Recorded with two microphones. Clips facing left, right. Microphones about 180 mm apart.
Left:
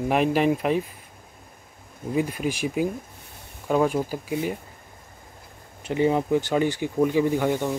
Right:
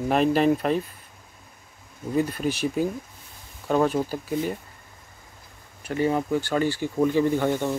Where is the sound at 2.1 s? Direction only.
10° left (ahead or behind).